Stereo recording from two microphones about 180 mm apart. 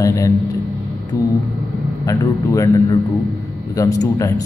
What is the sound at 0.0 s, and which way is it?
Speech, 20° left (ahead or behind).